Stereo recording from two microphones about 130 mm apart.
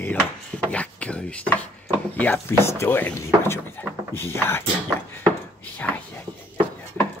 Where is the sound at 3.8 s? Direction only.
15° left (ahead or behind).